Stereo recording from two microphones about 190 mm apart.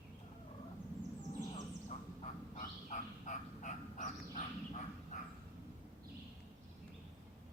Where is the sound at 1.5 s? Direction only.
40° left (ahead or behind).